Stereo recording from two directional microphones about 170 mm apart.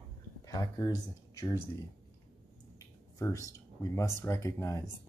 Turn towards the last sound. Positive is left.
turn(degrees=20)  # may be behind; listen again after turning